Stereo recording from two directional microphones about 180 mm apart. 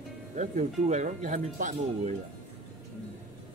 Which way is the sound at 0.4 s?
40° right (ahead or behind).